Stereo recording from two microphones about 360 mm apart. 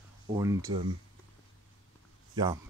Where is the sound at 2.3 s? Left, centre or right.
Centre.